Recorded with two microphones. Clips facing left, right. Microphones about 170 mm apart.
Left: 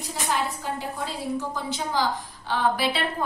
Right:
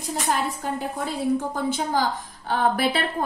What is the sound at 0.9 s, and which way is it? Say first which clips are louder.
A woman's voice: right 5 dB; 50° right (ahead or behind).